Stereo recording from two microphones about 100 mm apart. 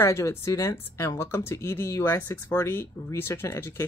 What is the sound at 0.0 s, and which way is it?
Speech, 30° left (ahead or behind).